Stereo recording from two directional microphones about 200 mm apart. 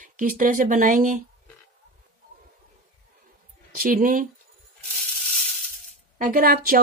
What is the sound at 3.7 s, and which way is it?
Speech, 45° right (ahead or behind).